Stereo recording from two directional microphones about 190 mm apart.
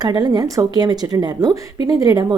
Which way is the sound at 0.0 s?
20° right (ahead or behind).